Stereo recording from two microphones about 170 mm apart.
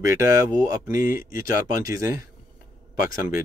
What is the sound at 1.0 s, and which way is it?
Speech, 55° left (ahead or behind).